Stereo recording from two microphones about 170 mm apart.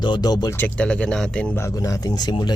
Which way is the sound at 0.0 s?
25° left (ahead or behind).